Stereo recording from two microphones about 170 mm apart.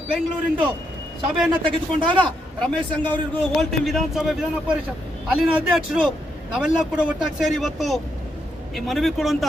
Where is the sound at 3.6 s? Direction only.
Centre (ahead or behind).